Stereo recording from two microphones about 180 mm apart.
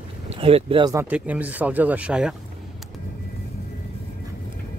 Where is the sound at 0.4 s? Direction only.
30° right (ahead or behind).